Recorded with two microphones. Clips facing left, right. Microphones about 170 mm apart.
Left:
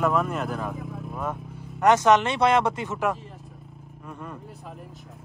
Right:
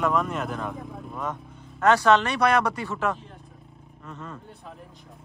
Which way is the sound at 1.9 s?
20° left (ahead or behind).